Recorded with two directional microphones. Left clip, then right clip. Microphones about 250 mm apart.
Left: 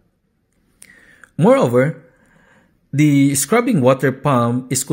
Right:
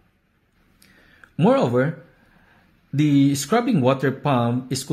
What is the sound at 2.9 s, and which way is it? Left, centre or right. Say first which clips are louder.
Speech: left 4 dB; centre.